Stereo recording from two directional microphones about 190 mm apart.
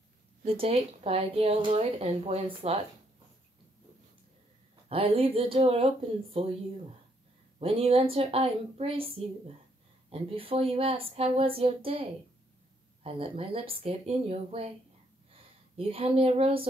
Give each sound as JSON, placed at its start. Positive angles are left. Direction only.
{"t": 0.4, "sound": "a woman's voice", "side_deg": -35}
{"t": 4.8, "sound": "speech", "side_deg": -30}
{"t": 7.5, "sound": "a woman's voice", "side_deg": -30}
{"t": 15.8, "sound": "a woman's voice", "side_deg": -30}